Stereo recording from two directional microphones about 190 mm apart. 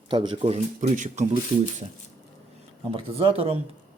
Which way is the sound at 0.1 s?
25° right (ahead or behind).